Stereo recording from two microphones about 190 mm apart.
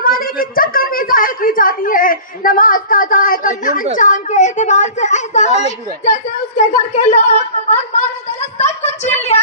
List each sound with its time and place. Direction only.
0.0 s a woman's voice: 50° left (ahead or behind)